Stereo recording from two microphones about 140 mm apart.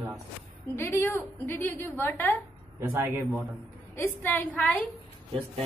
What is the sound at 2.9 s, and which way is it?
Speech, 10° right (ahead or behind).